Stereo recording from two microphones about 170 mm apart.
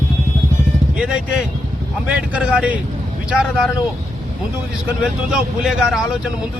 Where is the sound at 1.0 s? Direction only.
5° right (ahead or behind).